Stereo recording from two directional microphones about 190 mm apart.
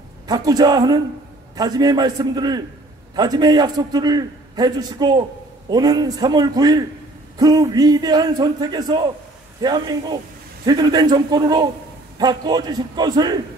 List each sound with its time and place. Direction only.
0.3 s a man's voice: 20° right (ahead or behind)